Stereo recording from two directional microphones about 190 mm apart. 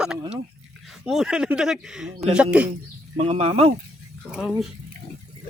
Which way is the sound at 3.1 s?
35° right (ahead or behind).